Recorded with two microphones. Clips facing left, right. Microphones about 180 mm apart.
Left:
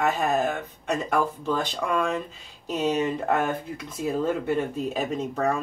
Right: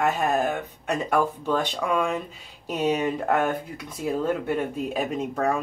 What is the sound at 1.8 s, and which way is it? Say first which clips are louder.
Speech: right 1 dB; centre (ahead or behind).